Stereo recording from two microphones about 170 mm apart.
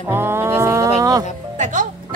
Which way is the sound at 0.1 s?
15° right (ahead or behind).